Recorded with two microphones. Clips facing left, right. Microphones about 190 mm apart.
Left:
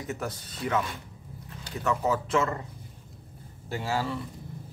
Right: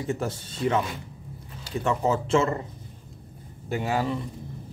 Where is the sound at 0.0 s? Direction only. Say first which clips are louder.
Right 5 dB; 30° right (ahead or behind).